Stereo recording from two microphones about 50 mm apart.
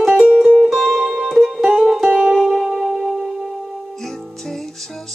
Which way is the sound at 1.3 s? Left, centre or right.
Centre.